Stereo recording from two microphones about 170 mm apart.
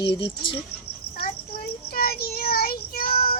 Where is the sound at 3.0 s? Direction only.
35° left (ahead or behind).